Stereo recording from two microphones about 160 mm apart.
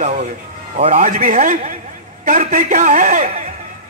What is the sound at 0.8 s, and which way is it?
Speech, 40° right (ahead or behind).